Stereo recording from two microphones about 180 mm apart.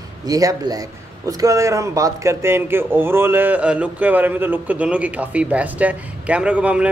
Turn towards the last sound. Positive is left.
turn(degrees=-5)  # may be behind; listen again after turning